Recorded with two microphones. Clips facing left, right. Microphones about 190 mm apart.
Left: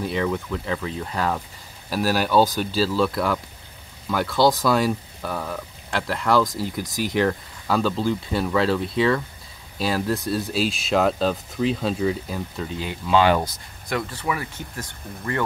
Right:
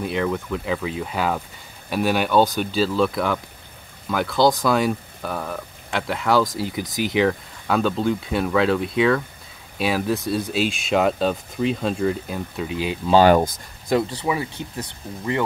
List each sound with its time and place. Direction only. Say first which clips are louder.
0.0 s speech: right 1 dB; centre (ahead or behind)
12.8 s speech: right 5 dB; 20° right (ahead or behind)
13.1 s speech: right 4 dB; 45° right (ahead or behind)
14.1 s speech: right 3 dB; 20° right (ahead or behind)